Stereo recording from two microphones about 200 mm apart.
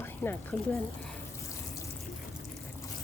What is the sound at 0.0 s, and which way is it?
Speech, 10° left (ahead or behind).